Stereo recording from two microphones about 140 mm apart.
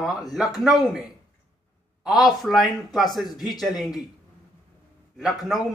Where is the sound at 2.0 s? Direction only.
Centre (ahead or behind).